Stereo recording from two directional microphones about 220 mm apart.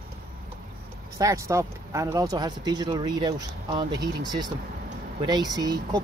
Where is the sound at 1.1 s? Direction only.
15° right (ahead or behind).